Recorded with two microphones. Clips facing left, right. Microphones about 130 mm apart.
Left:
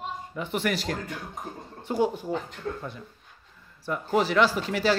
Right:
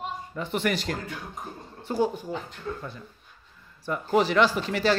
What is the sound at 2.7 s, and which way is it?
Speech, 50° left (ahead or behind).